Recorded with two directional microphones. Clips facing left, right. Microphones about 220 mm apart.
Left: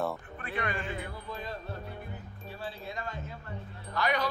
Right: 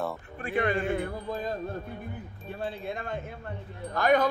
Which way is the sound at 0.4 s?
30° right (ahead or behind).